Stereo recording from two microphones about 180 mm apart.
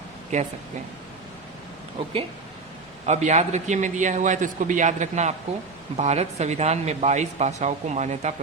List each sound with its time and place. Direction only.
0.3 s speech: 40° right (ahead or behind)
3.1 s a man's voice: 40° right (ahead or behind)